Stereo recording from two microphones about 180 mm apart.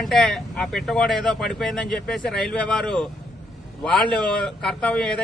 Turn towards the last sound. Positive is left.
turn(degrees=5)  # may be behind; listen again after turning